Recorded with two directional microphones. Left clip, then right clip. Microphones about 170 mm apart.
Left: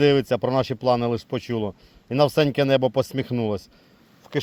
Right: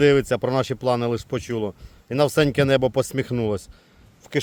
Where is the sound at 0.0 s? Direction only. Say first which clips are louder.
Right 1 dB; 20° right (ahead or behind).